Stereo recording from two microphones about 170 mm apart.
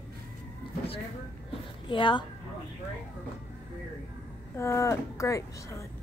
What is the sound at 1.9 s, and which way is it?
Speech, 30° left (ahead or behind).